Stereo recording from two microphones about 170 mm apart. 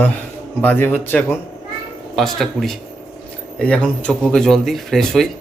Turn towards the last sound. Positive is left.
turn(degrees=0)  # may be behind; listen again after turning